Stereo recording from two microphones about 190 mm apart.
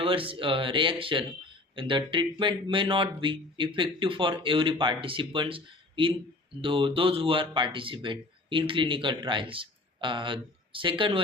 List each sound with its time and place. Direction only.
0.0 s speech: 30° right (ahead or behind)